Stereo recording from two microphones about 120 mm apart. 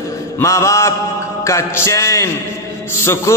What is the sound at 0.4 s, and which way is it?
A man's voice, 25° left (ahead or behind).